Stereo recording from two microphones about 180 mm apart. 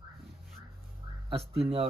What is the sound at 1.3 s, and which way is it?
Speech, 35° right (ahead or behind).